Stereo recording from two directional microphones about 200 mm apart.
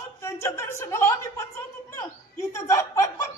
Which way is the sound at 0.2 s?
15° left (ahead or behind).